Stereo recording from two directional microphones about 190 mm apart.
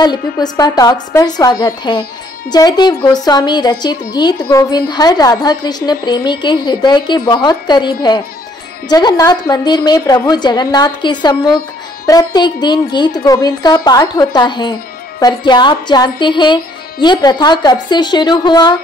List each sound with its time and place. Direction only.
0.0 s speech: 20° left (ahead or behind)